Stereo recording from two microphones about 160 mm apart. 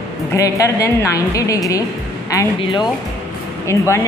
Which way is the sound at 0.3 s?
20° left (ahead or behind).